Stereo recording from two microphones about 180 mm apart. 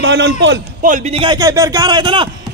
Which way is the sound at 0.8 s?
40° right (ahead or behind).